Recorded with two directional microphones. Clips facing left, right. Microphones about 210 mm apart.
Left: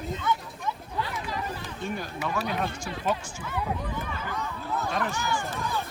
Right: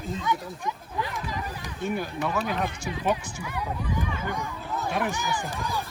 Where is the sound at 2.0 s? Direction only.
5° right (ahead or behind).